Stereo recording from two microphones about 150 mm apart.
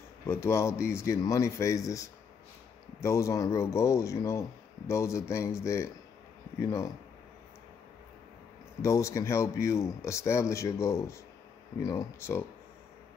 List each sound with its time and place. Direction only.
0.3 s speech: 15° left (ahead or behind)
8.8 s speech: 20° left (ahead or behind)